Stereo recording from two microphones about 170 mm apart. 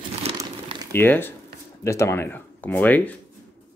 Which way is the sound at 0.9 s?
10° left (ahead or behind).